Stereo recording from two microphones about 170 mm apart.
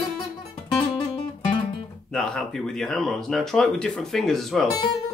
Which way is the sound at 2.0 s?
5° left (ahead or behind).